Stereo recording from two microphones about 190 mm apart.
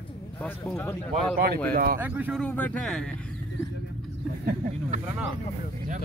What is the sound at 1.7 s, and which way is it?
Speech, 50° right (ahead or behind).